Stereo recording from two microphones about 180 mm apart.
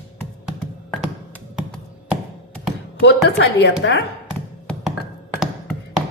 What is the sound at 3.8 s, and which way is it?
Speech, 90° left.